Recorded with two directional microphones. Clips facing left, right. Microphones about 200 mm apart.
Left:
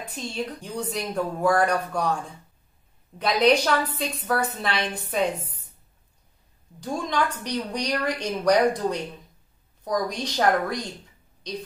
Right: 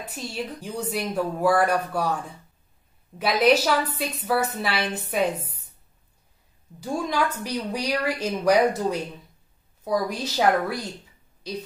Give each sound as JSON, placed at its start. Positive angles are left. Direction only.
{"t": 0.0, "sound": "a woman's voice", "side_deg": -5}
{"t": 3.2, "sound": "a woman's voice", "side_deg": -5}
{"t": 6.8, "sound": "a woman's voice", "side_deg": -10}